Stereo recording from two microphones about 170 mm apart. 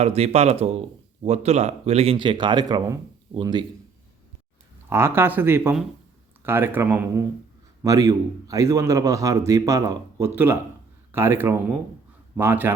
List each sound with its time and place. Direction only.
0.0 s a man's voice: 40° right (ahead or behind)
4.9 s a man's voice: 15° right (ahead or behind)